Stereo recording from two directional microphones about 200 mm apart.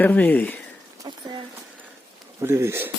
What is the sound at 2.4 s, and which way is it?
Speech, 10° right (ahead or behind).